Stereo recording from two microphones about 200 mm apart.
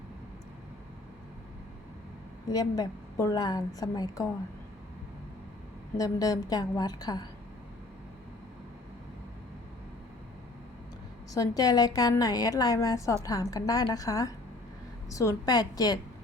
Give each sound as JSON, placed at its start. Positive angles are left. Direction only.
{"t": 2.5, "sound": "a woman's voice", "side_deg": 20}
{"t": 6.0, "sound": "a woman's voice", "side_deg": 20}
{"t": 11.3, "sound": "a woman's voice", "side_deg": 20}